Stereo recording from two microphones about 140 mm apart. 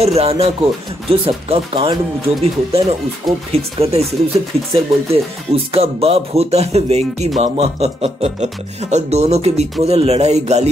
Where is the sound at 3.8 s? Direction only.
45° right (ahead or behind).